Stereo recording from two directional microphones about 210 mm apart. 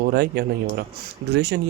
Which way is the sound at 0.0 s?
50° right (ahead or behind).